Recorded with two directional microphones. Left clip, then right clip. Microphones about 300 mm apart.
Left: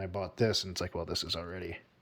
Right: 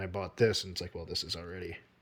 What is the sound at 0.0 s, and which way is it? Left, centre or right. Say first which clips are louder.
Speech: right 2 dB; centre.